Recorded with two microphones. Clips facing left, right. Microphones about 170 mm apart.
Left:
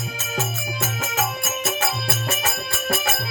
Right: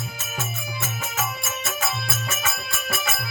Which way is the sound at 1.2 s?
70° left (ahead or behind).